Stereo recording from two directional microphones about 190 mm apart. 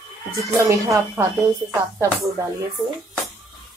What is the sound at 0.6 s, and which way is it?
A woman's voice, 15° right (ahead or behind).